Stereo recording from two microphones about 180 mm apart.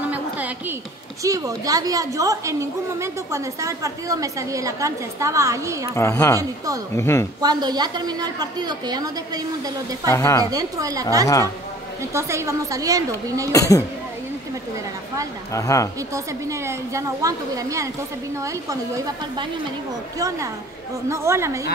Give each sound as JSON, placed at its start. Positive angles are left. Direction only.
{"t": 0.1, "sound": "a sound", "side_deg": -10}
{"t": 1.2, "sound": "a woman's voice", "side_deg": -20}
{"t": 5.9, "sound": "a woman's voice", "side_deg": 15}
{"t": 7.4, "sound": "a woman's voice", "side_deg": -25}
{"t": 10.1, "sound": "a woman's voice", "side_deg": 15}
{"t": 10.4, "sound": "a woman's voice", "side_deg": -20}
{"t": 11.2, "sound": "a woman's voice", "side_deg": 15}
{"t": 12.0, "sound": "a woman's voice", "side_deg": -15}
{"t": 13.5, "sound": "speech", "side_deg": 20}
{"t": 15.5, "sound": "a woman's voice", "side_deg": 15}
{"t": 16.0, "sound": "a woman's voice", "side_deg": -15}